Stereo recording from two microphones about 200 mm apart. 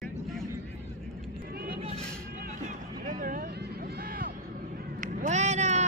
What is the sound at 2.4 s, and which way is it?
Vehicle, 40° right (ahead or behind).